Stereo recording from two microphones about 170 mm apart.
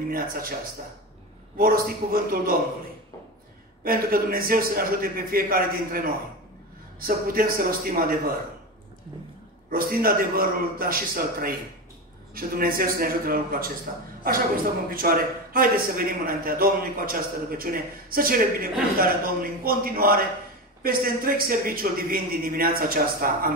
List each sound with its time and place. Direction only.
0.1 s a man's voice: 60° right (ahead or behind)
1.6 s a man's voice: 60° right (ahead or behind)
3.8 s a man's voice: 60° right (ahead or behind)
9.7 s a man's voice: 60° right (ahead or behind)